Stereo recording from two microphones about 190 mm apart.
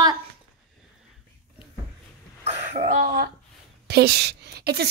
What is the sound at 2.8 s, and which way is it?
Cough, 55° right (ahead or behind).